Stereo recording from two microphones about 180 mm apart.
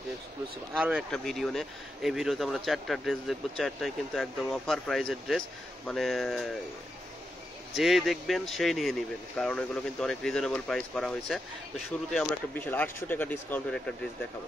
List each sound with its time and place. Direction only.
0.7 s speech: 5° right (ahead or behind)
7.7 s speech: centre (ahead or behind)